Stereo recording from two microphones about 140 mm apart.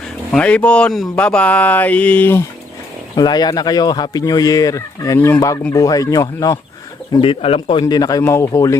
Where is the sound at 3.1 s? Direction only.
30° left (ahead or behind).